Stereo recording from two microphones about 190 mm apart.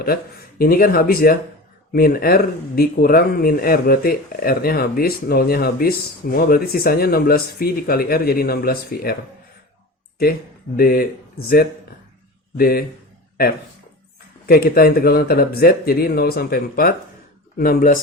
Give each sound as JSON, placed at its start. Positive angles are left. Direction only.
{"t": 0.6, "sound": "speech", "side_deg": 50}
{"t": 10.8, "sound": "speech", "side_deg": 55}
{"t": 12.5, "sound": "speech", "side_deg": 50}
{"t": 14.4, "sound": "speech", "side_deg": 55}